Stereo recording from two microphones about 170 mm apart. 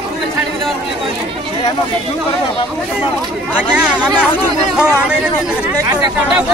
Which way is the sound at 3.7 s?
5° right (ahead or behind).